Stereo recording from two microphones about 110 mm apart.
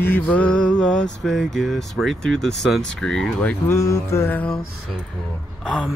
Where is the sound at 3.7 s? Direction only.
25° left (ahead or behind).